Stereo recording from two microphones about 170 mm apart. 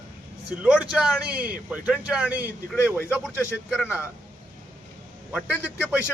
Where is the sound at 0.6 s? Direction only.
5° right (ahead or behind).